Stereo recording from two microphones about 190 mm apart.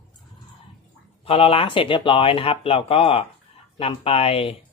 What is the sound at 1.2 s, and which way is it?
A man's voice, 30° left (ahead or behind).